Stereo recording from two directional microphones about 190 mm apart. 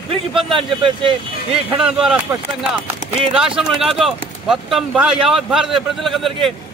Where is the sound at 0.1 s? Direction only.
25° right (ahead or behind).